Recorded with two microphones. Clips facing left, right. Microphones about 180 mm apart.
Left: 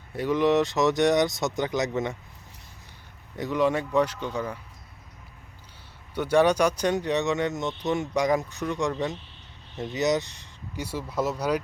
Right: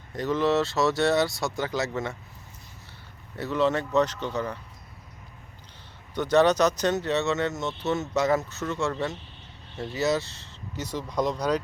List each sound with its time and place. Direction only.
0.1 s speech: 10° left (ahead or behind)
3.3 s speech: 15° left (ahead or behind)
6.1 s speech: 10° left (ahead or behind)